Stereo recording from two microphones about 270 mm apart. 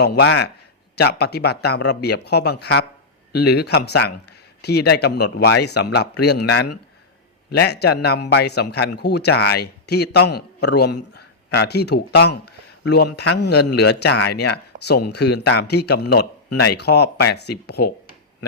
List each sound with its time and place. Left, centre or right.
0.2 s speech: left